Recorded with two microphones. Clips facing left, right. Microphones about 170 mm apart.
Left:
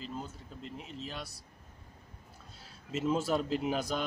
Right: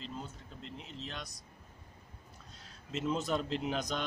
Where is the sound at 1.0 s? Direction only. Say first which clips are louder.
Left 2 dB; 5° left (ahead or behind).